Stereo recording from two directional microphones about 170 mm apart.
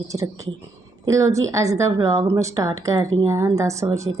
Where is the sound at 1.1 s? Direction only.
20° right (ahead or behind).